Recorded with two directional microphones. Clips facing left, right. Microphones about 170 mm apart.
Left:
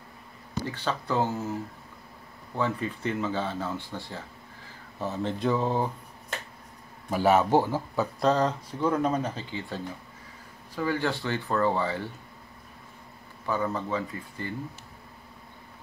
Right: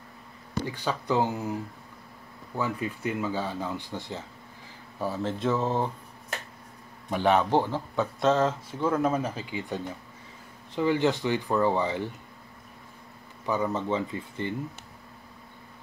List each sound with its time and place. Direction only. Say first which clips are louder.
0.7 s speech: right 1 dB; 15° right (ahead or behind)
2.5 s speech: left 1 dB; 10° right (ahead or behind)
5.0 s speech: even; 5° right (ahead or behind)
7.1 s speech: left 1 dB; 5° left (ahead or behind); by 12.1 s 15° right (ahead or behind)
13.5 s speech: right 2 dB; 20° right (ahead or behind)